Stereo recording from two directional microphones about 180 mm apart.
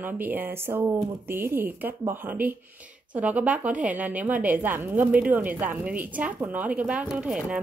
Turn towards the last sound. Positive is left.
turn(degrees=-5)  # may be behind; listen again after turning